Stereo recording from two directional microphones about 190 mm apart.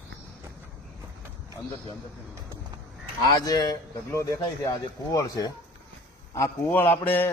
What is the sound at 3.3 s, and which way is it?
A man's voice, 20° left (ahead or behind).